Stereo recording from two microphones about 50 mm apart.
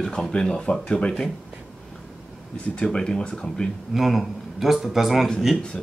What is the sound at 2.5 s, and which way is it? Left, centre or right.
Speech, left.